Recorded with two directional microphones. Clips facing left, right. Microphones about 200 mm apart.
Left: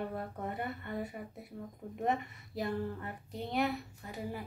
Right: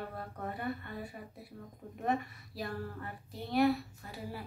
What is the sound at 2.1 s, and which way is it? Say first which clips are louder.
A woman's voice: right 1 dB; 20° left (ahead or behind).